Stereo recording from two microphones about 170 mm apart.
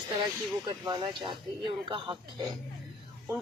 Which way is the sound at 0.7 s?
25° right (ahead or behind).